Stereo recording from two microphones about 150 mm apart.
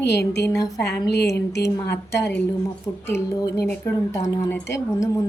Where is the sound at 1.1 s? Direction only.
90° left.